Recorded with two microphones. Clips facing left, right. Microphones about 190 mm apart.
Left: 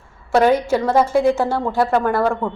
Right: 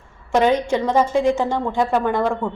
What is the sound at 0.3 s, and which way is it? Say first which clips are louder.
A woman's voice: left 2 dB; 10° left (ahead or behind).